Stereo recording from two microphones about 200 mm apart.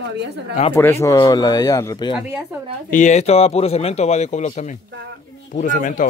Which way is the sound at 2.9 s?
35° left (ahead or behind).